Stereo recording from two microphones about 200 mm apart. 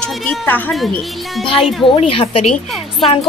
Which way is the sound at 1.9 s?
30° left (ahead or behind).